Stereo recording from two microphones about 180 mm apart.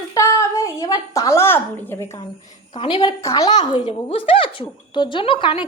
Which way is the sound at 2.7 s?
30° left (ahead or behind).